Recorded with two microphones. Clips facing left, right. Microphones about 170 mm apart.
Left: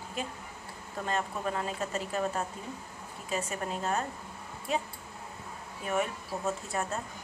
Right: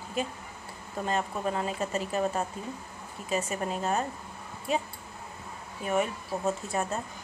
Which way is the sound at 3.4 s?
20° right (ahead or behind).